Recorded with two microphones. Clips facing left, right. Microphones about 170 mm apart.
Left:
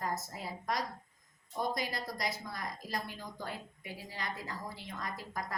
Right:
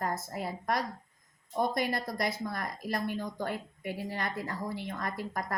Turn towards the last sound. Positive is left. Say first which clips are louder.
# right 5 dB
turn(degrees=-55)  # may be behind; listen again after turning